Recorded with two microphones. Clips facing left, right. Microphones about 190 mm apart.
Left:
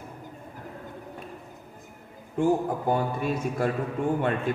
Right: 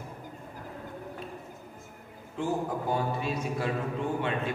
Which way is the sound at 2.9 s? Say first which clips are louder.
Left 5 dB; 50° left (ahead or behind).